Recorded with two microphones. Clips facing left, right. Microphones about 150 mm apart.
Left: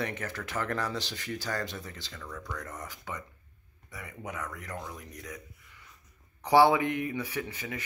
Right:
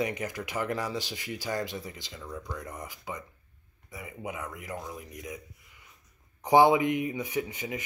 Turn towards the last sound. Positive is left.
turn(degrees=-15)  # may be behind; listen again after turning